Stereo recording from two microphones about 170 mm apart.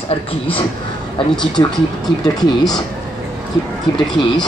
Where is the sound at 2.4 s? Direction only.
Centre (ahead or behind).